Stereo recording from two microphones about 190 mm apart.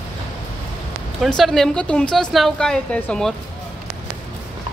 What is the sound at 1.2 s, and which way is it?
A woman's voice, centre (ahead or behind).